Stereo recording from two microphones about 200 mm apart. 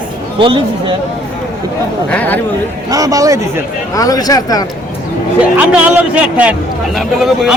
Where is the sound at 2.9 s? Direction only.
15° right (ahead or behind).